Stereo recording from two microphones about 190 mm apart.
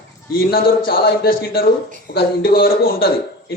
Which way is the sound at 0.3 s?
50° left (ahead or behind).